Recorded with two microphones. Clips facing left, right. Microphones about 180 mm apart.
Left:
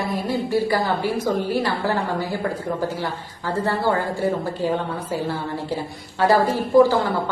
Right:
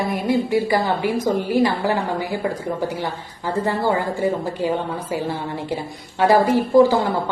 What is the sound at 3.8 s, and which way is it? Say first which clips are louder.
Speech: right 1 dB; 15° right (ahead or behind).